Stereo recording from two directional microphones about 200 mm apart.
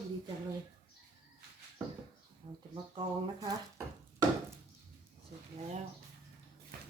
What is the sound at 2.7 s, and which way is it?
Speech, 25° right (ahead or behind).